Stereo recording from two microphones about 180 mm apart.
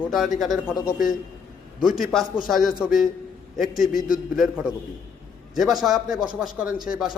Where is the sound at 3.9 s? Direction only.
50° left (ahead or behind).